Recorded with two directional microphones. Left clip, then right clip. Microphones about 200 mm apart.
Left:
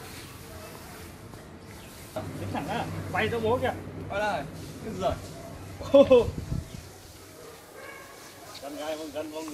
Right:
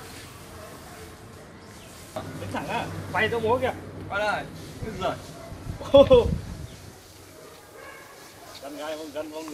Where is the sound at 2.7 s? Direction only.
15° right (ahead or behind).